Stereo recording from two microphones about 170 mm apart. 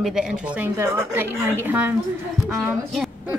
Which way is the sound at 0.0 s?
5° right (ahead or behind).